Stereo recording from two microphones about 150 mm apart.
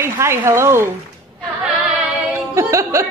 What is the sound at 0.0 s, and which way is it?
Speech, 20° right (ahead or behind).